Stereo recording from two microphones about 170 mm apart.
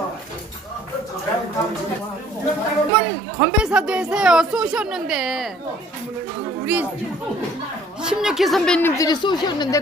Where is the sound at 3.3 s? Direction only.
5° right (ahead or behind).